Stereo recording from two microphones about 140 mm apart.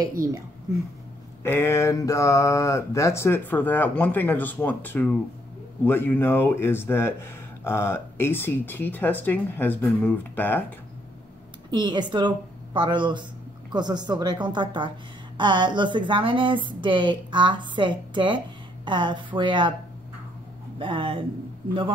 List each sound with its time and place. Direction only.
0.0 s a woman's voice: 25° right (ahead or behind)
1.4 s speech: 15° left (ahead or behind)
11.7 s a woman's voice: 30° right (ahead or behind)
20.8 s a woman's voice: 35° right (ahead or behind)